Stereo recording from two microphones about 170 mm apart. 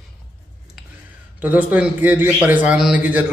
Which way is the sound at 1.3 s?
10° right (ahead or behind).